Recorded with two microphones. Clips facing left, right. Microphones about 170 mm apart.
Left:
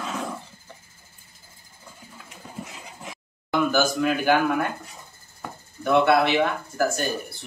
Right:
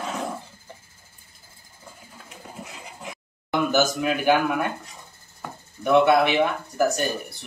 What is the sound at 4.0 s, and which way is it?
Speech, 15° right (ahead or behind).